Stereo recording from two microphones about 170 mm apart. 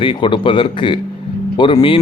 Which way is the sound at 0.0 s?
30° left (ahead or behind).